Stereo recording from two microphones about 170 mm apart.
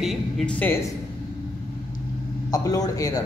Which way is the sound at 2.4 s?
20° left (ahead or behind).